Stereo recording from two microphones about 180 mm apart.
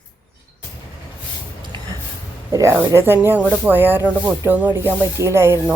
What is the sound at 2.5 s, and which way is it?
Speech, 15° right (ahead or behind).